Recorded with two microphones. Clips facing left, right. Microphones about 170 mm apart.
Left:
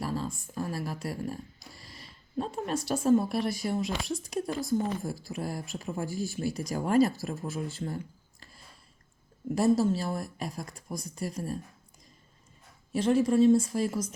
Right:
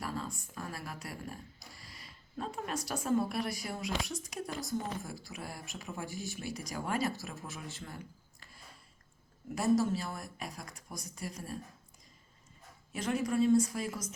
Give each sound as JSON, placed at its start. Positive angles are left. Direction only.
{"t": 0.0, "sound": "speech", "side_deg": 30}
{"t": 9.6, "sound": "speech", "side_deg": 30}
{"t": 12.9, "sound": "speech", "side_deg": 30}